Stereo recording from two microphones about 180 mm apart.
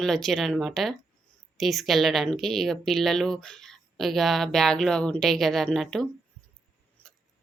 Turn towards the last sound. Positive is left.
turn(degrees=0)  # may be behind; listen again after turning